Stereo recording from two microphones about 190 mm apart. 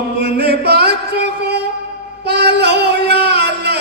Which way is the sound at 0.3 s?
60° right (ahead or behind).